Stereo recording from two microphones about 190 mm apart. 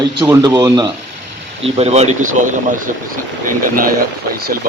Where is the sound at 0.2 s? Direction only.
20° right (ahead or behind).